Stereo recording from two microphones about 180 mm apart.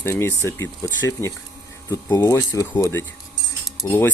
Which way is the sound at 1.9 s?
20° left (ahead or behind).